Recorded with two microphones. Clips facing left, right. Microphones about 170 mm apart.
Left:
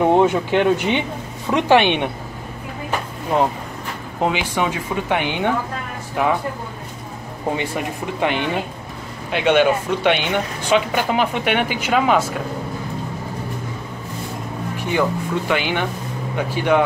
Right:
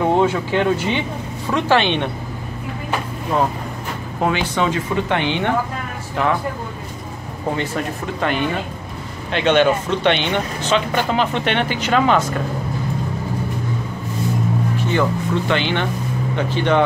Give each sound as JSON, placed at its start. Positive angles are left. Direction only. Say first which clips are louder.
{"t": 0.0, "sound": "speech", "louder": "left 2 dB", "side_deg": 15}
{"t": 4.2, "sound": "speech", "louder": "right 1 dB", "side_deg": 15}
{"t": 7.5, "sound": "speech", "louder": "right 1 dB", "side_deg": 15}
{"t": 14.8, "sound": "speech", "louder": "left 2 dB", "side_deg": 15}